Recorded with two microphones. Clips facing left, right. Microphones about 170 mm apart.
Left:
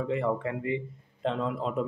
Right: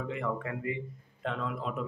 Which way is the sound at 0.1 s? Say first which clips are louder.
Left 6 dB; 30° left (ahead or behind).